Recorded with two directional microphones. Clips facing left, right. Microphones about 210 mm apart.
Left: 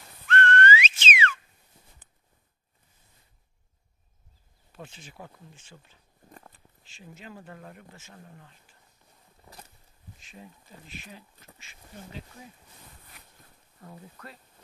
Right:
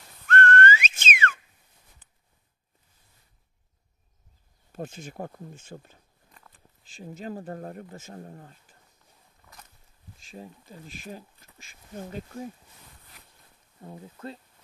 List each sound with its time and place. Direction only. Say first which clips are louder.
0.3 s whistling: right 1 dB; 45° right (ahead or behind)
4.7 s speech: right 9 dB; 45° right (ahead or behind)
7.0 s speech: right 9 dB; 40° right (ahead or behind)
9.4 s a sound: left 3 dB; 30° left (ahead or behind)
10.3 s speech: right 6 dB; 40° right (ahead or behind)
13.7 s speech: right 4 dB; 20° right (ahead or behind)